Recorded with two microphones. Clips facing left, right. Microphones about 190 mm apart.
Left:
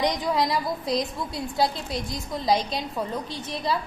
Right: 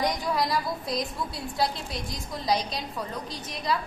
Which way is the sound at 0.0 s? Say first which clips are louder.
Left 3 dB; 20° left (ahead or behind).